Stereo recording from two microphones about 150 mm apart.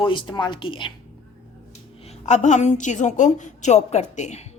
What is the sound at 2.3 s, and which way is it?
A woman's voice, 50° left (ahead or behind).